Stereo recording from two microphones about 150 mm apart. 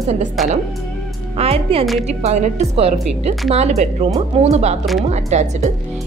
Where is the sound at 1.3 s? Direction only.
40° right (ahead or behind).